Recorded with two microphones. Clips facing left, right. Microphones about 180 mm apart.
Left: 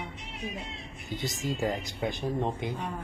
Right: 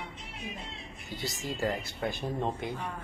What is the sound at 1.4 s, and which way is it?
Speech, 15° left (ahead or behind).